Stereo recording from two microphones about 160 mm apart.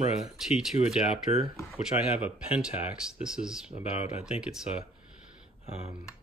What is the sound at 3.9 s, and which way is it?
Speech, 45° left (ahead or behind).